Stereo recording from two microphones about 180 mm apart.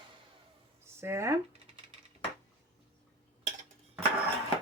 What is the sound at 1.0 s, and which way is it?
Speech, 15° right (ahead or behind).